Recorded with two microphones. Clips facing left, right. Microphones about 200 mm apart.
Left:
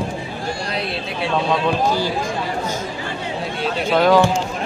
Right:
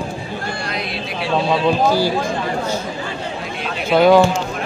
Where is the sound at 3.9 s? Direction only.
10° right (ahead or behind).